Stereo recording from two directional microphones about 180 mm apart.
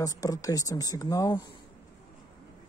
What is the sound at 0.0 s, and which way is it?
Speech, 20° left (ahead or behind).